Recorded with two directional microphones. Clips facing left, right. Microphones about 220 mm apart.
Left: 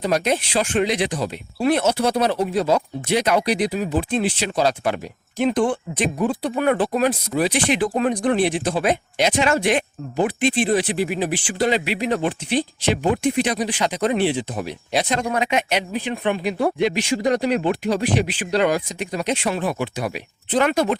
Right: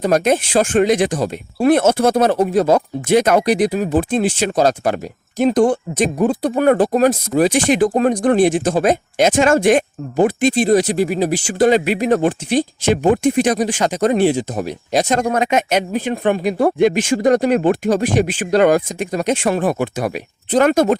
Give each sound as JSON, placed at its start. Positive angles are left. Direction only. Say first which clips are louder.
{"t": 0.0, "sound": "speech", "louder": "right 6 dB", "side_deg": -50}